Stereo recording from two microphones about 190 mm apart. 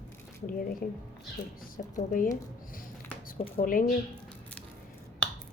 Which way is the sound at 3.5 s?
45° left (ahead or behind).